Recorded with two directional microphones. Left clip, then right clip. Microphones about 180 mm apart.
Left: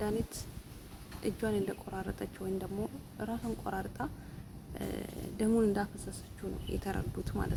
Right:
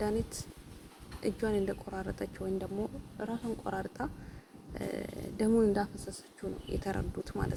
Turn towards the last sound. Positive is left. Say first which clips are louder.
# right 1 dB
turn(degrees=-10)  # may be behind; listen again after turning